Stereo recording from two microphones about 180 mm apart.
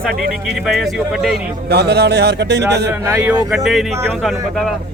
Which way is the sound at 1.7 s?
65° right (ahead or behind).